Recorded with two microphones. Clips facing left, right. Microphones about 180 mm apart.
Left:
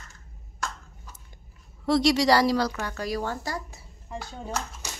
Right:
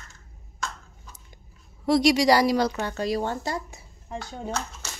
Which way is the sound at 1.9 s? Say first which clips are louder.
Right 2 dB; 15° right (ahead or behind).